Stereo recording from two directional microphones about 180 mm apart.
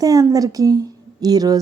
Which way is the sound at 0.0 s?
20° right (ahead or behind).